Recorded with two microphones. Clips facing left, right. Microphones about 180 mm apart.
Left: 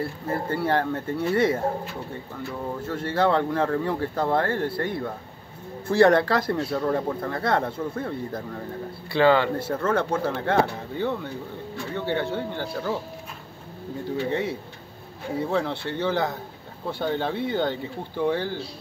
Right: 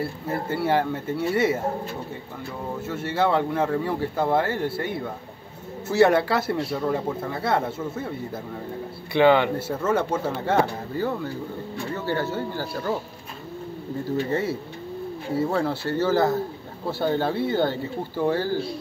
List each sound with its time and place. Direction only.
0.3 s speech: 5° right (ahead or behind)
2.8 s speech: 5° right (ahead or behind)
9.1 s speech: 20° right (ahead or behind)
9.6 s speech: 5° right (ahead or behind)
14.3 s speech: 5° right (ahead or behind)